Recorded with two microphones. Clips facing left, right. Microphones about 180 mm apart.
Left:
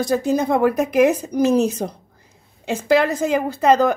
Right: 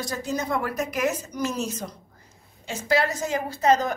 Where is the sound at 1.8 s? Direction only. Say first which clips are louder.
Left 10 dB; 90° left.